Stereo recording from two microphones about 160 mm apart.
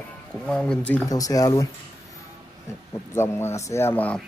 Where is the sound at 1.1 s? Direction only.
20° left (ahead or behind).